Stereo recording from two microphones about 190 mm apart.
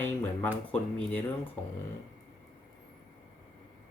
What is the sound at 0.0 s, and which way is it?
Speech, 10° left (ahead or behind).